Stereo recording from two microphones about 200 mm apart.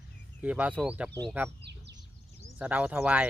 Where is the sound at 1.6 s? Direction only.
60° right (ahead or behind).